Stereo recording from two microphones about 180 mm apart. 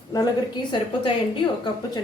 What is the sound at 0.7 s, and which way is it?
A woman's voice, 25° left (ahead or behind).